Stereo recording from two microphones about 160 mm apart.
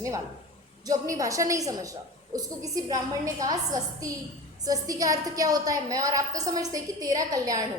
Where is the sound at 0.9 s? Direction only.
20° right (ahead or behind).